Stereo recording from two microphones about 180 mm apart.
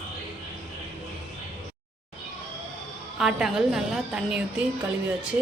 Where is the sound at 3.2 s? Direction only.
Centre (ahead or behind).